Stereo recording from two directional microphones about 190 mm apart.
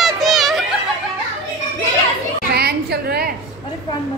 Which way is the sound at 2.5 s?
55° right (ahead or behind).